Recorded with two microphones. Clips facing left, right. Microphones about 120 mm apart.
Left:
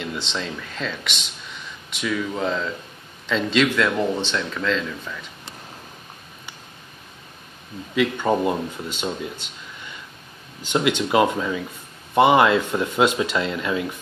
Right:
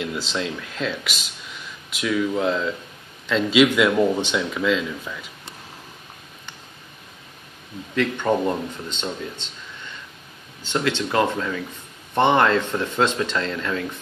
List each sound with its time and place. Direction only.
0.3 s speech: 5° right (ahead or behind)
7.9 s speech: 5° left (ahead or behind)
10.6 s speech: 15° left (ahead or behind)